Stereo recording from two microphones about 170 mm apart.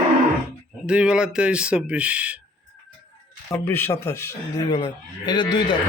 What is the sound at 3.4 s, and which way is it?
Speech, 15° left (ahead or behind).